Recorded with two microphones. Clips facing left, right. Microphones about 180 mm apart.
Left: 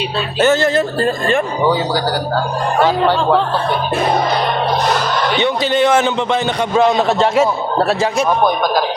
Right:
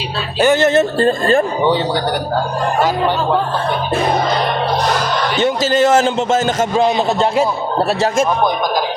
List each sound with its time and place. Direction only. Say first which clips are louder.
0.4 s a man's voice: right 2 dB; 20° right (ahead or behind)
5.5 s a man's voice: right 2 dB; 40° right (ahead or behind)